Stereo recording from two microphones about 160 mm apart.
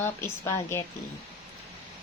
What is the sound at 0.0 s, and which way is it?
Speech, 15° left (ahead or behind).